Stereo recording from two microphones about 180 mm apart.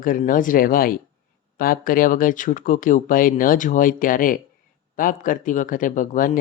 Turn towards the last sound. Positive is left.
turn(degrees=45)  # may be behind; listen again after turning